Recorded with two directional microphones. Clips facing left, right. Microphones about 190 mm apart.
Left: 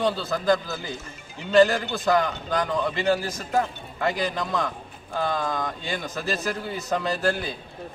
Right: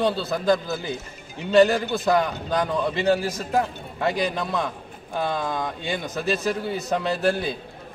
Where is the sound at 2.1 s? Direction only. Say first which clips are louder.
Left 1 dB; 20° right (ahead or behind).